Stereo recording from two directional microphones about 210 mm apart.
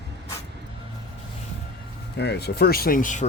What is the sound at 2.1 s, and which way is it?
Speech, 50° left (ahead or behind).